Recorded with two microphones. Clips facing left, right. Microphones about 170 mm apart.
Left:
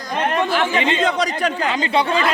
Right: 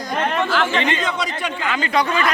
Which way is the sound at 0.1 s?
15° left (ahead or behind).